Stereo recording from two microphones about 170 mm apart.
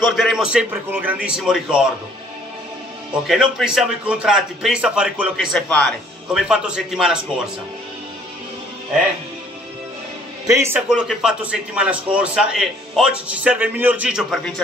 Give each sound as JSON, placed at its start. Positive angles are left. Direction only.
{"t": 0.0, "sound": "a man's voice", "side_deg": 0}
{"t": 3.3, "sound": "a man's voice", "side_deg": 0}
{"t": 10.4, "sound": "a man's voice", "side_deg": -15}
{"t": 11.1, "sound": "a man's voice", "side_deg": -5}